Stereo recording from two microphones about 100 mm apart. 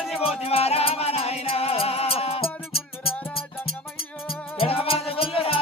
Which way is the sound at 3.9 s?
65° left (ahead or behind).